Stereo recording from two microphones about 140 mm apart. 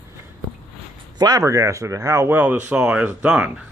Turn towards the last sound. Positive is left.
turn(degrees=-10)  # may be behind; listen again after turning